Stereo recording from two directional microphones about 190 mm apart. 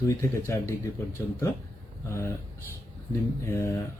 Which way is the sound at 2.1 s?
15° left (ahead or behind).